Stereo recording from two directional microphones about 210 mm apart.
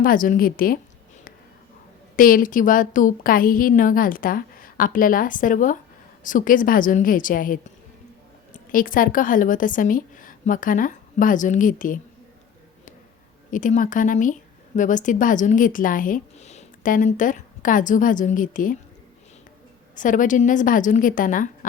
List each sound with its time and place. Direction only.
0.0 s speech: 40° left (ahead or behind)
2.1 s a woman's voice: 40° left (ahead or behind)
13.5 s speech: 40° left (ahead or behind)
20.0 s speech: 40° left (ahead or behind)